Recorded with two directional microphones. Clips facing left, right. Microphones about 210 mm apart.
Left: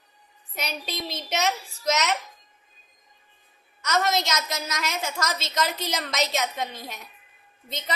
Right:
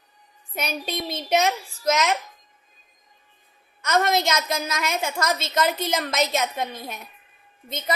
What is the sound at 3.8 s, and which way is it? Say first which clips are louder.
A woman's voice: right 3 dB; 55° right (ahead or behind).